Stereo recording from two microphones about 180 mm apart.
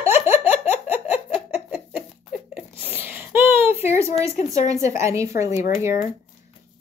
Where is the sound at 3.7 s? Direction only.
35° left (ahead or behind).